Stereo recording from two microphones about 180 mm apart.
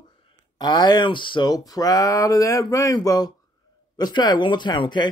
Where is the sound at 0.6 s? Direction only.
25° left (ahead or behind).